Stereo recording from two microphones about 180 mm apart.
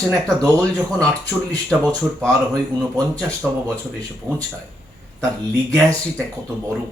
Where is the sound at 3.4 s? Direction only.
10° right (ahead or behind).